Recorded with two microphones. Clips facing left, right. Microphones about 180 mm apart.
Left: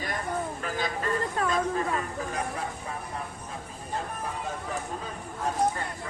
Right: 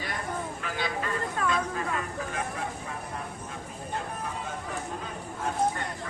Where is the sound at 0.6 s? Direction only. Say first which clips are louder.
Left 1 dB; 45° left (ahead or behind).